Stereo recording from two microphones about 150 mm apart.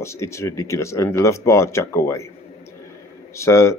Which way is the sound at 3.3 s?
20° left (ahead or behind).